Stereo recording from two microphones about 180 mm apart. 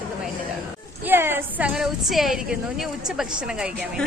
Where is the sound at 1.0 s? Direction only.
10° right (ahead or behind).